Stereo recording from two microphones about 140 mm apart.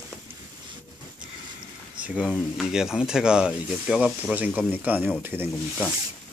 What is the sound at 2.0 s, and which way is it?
Speech, 10° right (ahead or behind).